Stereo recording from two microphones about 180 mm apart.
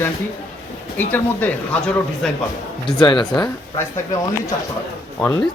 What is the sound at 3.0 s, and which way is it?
Speech, 25° left (ahead or behind).